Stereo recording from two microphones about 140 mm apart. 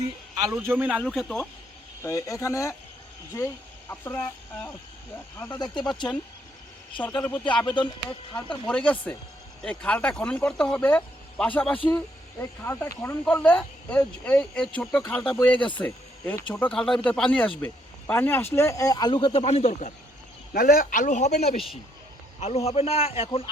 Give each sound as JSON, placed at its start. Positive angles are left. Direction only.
{"t": 0.5, "sound": "a man's voice", "side_deg": -10}
{"t": 1.0, "sound": "speech", "side_deg": 0}
{"t": 2.0, "sound": "speech", "side_deg": 20}
{"t": 5.7, "sound": "speech", "side_deg": 30}
{"t": 7.2, "sound": "speech", "side_deg": 15}
{"t": 7.8, "sound": "speech", "side_deg": 35}
{"t": 8.6, "sound": "speech", "side_deg": 10}
{"t": 20.5, "sound": "a man's voice", "side_deg": 90}